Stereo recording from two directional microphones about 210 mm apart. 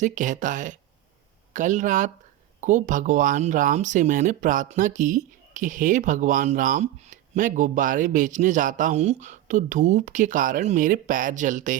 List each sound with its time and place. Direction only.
0.0 s speech: 35° right (ahead or behind)